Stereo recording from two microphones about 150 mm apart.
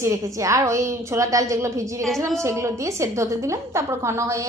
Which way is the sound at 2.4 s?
20° right (ahead or behind).